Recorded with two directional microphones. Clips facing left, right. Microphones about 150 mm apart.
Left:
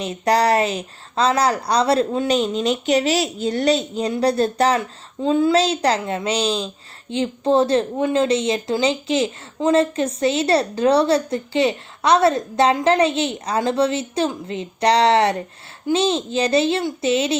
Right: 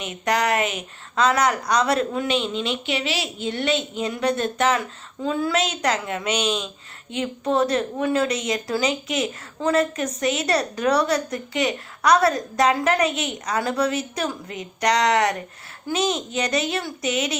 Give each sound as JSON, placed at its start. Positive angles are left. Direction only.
{"t": 0.0, "sound": "a woman's voice", "side_deg": 35}